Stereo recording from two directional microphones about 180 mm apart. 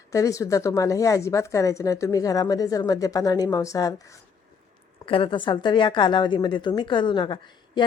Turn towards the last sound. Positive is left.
turn(degrees=25)  # may be behind; listen again after turning